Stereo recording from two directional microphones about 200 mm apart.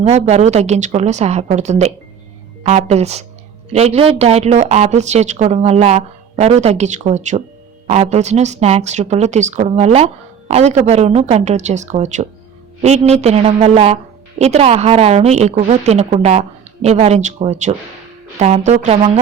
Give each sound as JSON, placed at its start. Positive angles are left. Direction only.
{"t": 0.0, "sound": "speech", "side_deg": -30}